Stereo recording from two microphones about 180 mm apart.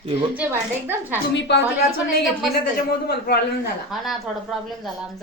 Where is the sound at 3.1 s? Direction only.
65° left (ahead or behind).